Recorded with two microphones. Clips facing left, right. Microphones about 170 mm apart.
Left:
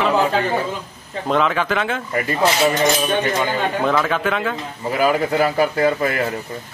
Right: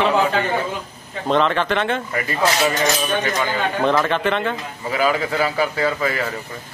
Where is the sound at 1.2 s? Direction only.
5° left (ahead or behind).